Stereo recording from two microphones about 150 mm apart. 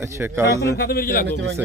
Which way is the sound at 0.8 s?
85° left.